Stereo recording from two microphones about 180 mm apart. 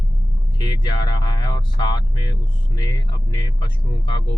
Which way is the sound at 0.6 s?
25° left (ahead or behind).